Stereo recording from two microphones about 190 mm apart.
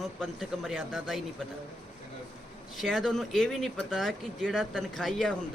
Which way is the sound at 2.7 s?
Centre (ahead or behind).